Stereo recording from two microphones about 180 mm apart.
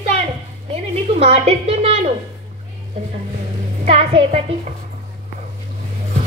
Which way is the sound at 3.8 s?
35° right (ahead or behind).